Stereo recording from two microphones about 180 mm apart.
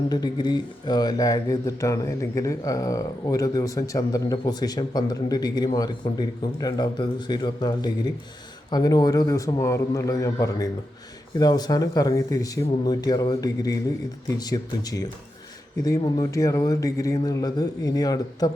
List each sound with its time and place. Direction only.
0.1 s speech: 20° left (ahead or behind)